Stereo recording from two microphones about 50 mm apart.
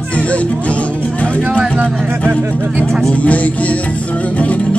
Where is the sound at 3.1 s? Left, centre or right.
Left.